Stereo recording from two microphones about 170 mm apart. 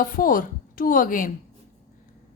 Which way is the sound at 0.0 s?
55° left (ahead or behind).